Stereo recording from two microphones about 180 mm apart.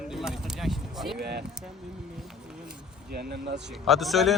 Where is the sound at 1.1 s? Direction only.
65° right (ahead or behind).